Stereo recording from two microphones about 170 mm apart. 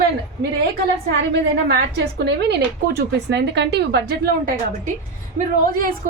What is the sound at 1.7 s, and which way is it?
A woman's voice, 75° right (ahead or behind).